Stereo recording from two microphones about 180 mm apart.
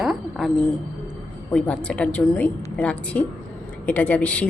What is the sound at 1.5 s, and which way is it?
A woman's voice, 5° left (ahead or behind).